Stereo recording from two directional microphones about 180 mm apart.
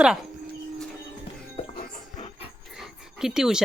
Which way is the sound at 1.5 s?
35° left (ahead or behind).